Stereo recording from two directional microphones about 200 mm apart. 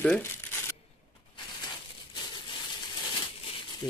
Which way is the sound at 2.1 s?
25° left (ahead or behind).